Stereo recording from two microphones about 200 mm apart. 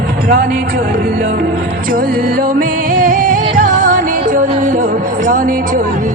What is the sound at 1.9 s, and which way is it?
Music, 45° right (ahead or behind).